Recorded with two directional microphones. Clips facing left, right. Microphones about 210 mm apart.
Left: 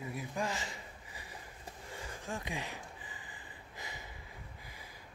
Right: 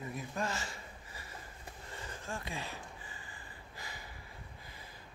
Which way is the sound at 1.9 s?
10° left (ahead or behind).